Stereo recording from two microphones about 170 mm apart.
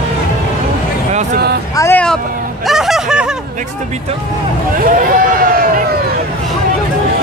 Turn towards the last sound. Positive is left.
turn(degrees=-55)  # may be behind; listen again after turning